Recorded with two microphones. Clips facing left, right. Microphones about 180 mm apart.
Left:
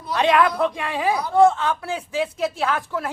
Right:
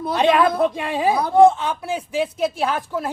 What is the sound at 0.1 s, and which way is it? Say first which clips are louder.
A woman's voice: right 2 dB; 20° right (ahead or behind).